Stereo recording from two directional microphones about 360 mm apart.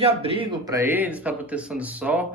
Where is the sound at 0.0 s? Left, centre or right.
Centre.